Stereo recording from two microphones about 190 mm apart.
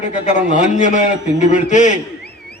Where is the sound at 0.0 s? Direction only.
40° left (ahead or behind).